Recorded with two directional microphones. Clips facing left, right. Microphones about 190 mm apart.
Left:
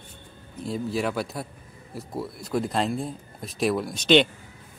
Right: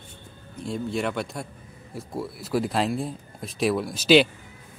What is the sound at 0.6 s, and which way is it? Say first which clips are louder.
Speech: even; centre (ahead or behind).